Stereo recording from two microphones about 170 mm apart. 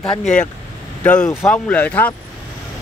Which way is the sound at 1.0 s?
10° left (ahead or behind).